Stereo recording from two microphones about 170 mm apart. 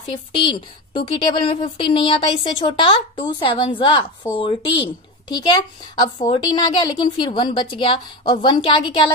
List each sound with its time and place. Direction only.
0.1 s speech: 30° left (ahead or behind)